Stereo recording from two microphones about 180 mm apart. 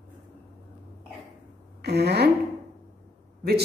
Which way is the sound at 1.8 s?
65° right (ahead or behind).